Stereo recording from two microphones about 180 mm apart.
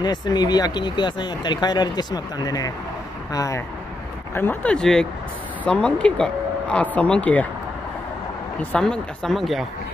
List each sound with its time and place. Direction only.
0.0 s speech: 25° left (ahead or behind); by 7.4 s 5° left (ahead or behind)
8.7 s speech: 5° left (ahead or behind)